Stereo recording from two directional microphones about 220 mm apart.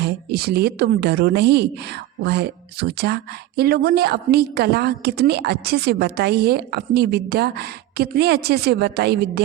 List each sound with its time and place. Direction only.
0.0 s speech: 45° right (ahead or behind)